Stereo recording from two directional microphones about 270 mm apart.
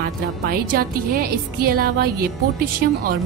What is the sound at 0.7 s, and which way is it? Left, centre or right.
A woman's voice, right.